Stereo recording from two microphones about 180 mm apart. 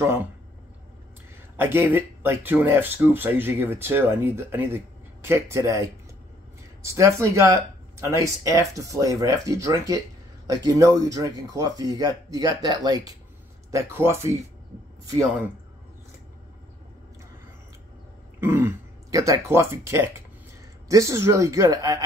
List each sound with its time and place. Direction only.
0.0 s speech: 15° right (ahead or behind)
1.6 s speech: 10° right (ahead or behind)
18.4 s speech: 10° right (ahead or behind)